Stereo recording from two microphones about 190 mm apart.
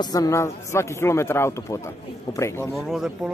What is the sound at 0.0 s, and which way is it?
A man's voice, 20° left (ahead or behind).